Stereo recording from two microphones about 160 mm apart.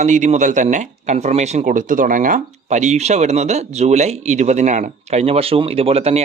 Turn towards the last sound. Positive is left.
turn(degrees=-40)  # may be behind; listen again after turning